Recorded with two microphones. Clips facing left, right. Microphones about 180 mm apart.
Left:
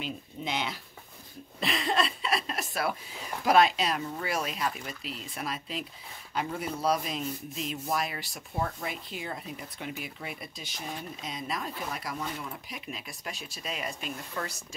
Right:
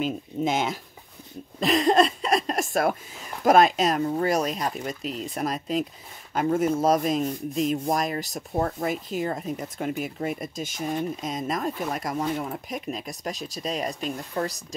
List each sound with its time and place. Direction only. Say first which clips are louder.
0.0 s speech: right 10 dB; 45° right (ahead or behind)
1.6 s a sound: right 9 dB; 40° right (ahead or behind)
3.4 s speech: right 5 dB; 45° right (ahead or behind)